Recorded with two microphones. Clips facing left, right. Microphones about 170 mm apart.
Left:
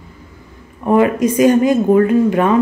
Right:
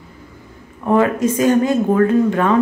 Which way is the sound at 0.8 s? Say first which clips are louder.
Left 2 dB; 15° left (ahead or behind).